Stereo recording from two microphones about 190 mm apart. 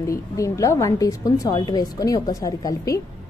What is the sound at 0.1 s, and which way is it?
A woman's voice, 15° left (ahead or behind).